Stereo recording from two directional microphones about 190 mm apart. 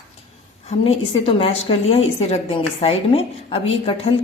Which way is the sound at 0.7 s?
30° left (ahead or behind).